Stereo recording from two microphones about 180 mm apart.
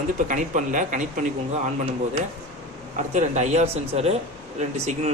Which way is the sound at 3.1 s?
40° right (ahead or behind).